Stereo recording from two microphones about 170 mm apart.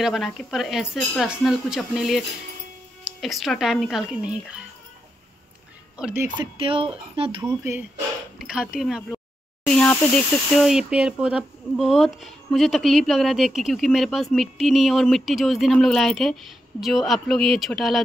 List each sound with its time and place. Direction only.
0.0 s speech: centre (ahead or behind)
5.9 s speech: 5° right (ahead or behind)
6.4 s speech: 30° right (ahead or behind)
7.4 s speech: 15° right (ahead or behind)
8.4 s speech: 5° right (ahead or behind)